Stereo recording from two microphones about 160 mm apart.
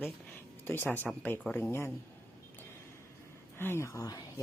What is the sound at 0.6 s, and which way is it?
Speech, 15° left (ahead or behind).